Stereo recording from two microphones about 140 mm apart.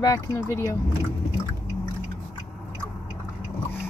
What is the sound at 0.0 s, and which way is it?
Speech, 25° left (ahead or behind).